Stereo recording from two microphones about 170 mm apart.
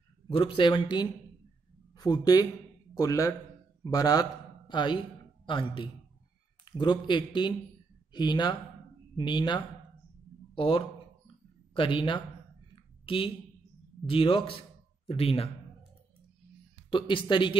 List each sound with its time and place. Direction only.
0.6 s a man's voice: 30° left (ahead or behind)
10.5 s a sound: 30° left (ahead or behind)
11.7 s a man's voice: 30° left (ahead or behind)
16.9 s speech: 30° left (ahead or behind)